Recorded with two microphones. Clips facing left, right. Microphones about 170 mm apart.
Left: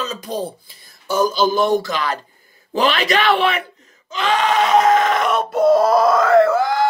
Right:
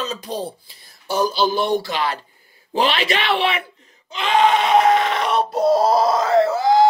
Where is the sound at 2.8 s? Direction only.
40° left (ahead or behind).